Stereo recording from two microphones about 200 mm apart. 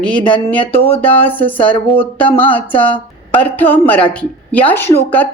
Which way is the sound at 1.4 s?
25° left (ahead or behind).